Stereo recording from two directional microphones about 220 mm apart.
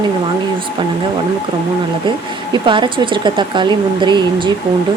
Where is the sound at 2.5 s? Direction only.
20° right (ahead or behind).